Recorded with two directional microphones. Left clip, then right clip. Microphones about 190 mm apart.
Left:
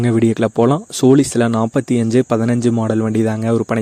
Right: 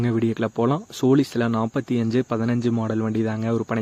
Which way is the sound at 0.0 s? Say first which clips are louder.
Left 8 dB; 35° left (ahead or behind).